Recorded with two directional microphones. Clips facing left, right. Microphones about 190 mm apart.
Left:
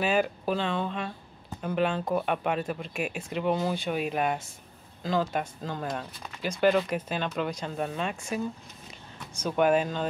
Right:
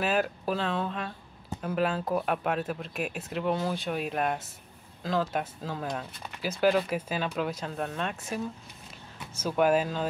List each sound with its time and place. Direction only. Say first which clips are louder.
0.0 s speech: left 2 dB; centre (ahead or behind)